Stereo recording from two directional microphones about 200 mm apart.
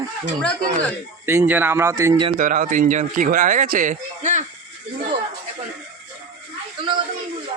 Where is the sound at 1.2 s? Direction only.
10° right (ahead or behind).